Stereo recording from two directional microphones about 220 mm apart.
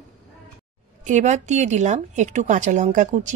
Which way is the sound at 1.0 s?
35° right (ahead or behind).